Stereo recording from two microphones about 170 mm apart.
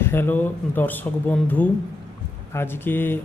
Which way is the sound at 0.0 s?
15° left (ahead or behind).